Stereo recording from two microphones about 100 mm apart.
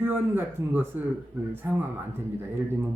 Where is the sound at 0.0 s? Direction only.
20° right (ahead or behind).